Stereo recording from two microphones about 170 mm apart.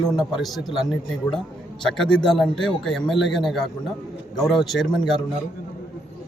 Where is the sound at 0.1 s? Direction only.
Centre (ahead or behind).